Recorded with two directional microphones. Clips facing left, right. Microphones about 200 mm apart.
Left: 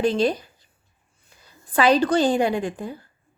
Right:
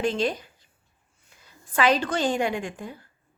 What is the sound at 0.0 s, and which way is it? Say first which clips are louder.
A woman's voice: left 5 dB; 35° left (ahead or behind).